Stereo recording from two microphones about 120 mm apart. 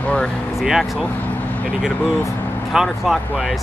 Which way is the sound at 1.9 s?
15° left (ahead or behind).